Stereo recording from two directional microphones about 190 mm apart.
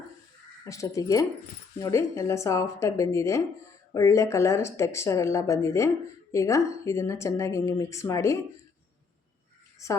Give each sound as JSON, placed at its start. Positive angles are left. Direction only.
{"t": 0.6, "sound": "speech", "side_deg": 15}
{"t": 9.8, "sound": "speech", "side_deg": 15}